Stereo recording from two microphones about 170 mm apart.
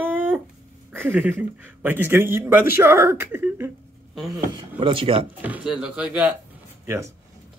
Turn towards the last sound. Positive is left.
turn(degrees=-15)  # may be behind; listen again after turning